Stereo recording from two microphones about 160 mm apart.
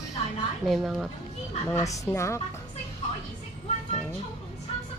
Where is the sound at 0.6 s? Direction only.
Centre (ahead or behind).